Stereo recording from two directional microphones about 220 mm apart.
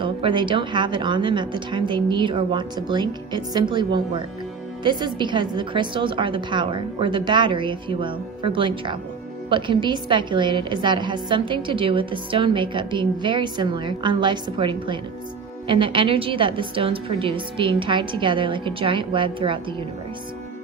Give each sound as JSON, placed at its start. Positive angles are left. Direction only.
{"t": 0.0, "sound": "a woman's voice", "side_deg": -20}